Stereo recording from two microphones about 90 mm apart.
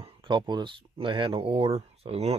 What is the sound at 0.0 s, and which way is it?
Speech, 60° right (ahead or behind).